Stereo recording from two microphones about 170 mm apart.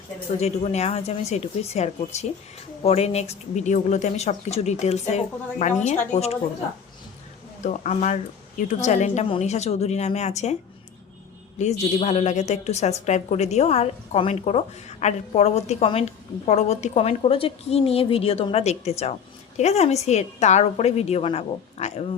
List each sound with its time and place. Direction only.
0.3 s a woman's voice: 40° left (ahead or behind)
7.6 s a woman's voice: 45° left (ahead or behind)